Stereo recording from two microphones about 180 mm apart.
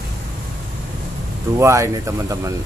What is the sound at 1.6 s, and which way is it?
Speech, 15° right (ahead or behind).